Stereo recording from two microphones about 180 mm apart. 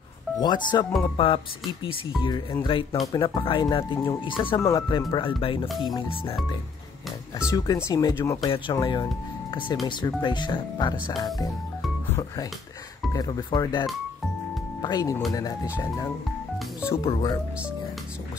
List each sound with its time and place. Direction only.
0.4 s speech: 25° left (ahead or behind)
2.6 s speech: 30° left (ahead or behind)
7.4 s speech: 20° left (ahead or behind)
14.8 s speech: 20° left (ahead or behind)
16.9 s speech: 30° left (ahead or behind)